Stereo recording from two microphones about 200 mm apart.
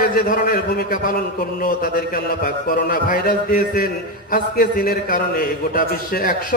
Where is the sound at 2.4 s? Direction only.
45° left (ahead or behind).